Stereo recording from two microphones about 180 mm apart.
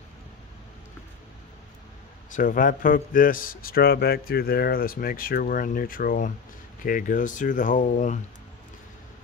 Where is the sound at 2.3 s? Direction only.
50° left (ahead or behind).